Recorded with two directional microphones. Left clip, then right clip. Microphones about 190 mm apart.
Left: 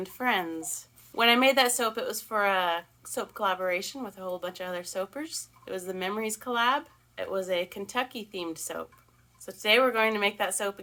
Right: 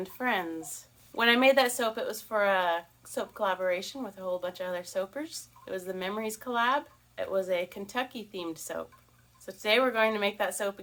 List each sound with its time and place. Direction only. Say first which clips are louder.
0.0 s speech: left 2 dB; 20° left (ahead or behind)